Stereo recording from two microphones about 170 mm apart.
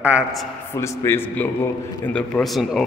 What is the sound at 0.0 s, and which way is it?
Speech, 5° right (ahead or behind).